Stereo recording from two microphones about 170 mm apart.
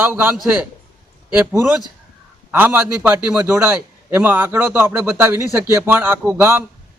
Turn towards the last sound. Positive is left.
turn(degrees=-10)  # may be behind; listen again after turning